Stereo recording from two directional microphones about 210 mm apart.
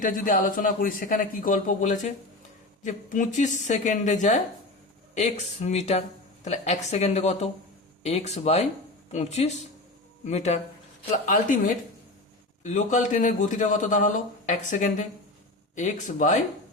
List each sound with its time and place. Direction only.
0.0 s a man's voice: 40° left (ahead or behind)
12.6 s a man's voice: 35° left (ahead or behind)